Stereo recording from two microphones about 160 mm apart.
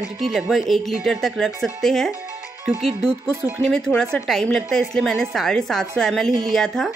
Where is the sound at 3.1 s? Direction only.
15° right (ahead or behind).